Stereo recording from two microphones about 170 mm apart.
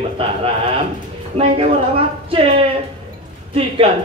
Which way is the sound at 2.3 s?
35° right (ahead or behind).